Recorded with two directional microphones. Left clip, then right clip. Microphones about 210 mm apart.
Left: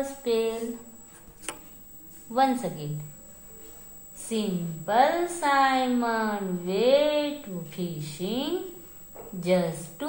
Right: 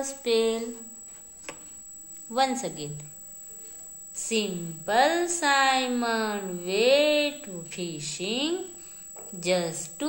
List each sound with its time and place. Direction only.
0.0 s a woman's voice: 35° right (ahead or behind)
2.3 s a woman's voice: 35° right (ahead or behind)
4.1 s a woman's voice: 35° right (ahead or behind)